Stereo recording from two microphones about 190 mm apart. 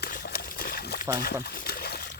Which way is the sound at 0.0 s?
55° left (ahead or behind).